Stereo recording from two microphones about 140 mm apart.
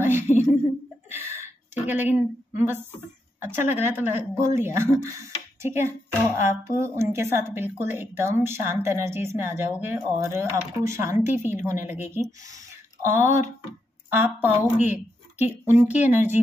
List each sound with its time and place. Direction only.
0.0 s a sound: 15° right (ahead or behind)
3.3 s speech: 15° right (ahead or behind)
14.1 s speech: 15° right (ahead or behind)
14.8 s speech: 55° left (ahead or behind)
15.6 s speech: 15° right (ahead or behind)